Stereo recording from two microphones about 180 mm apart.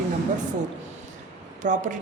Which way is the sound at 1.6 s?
45° right (ahead or behind).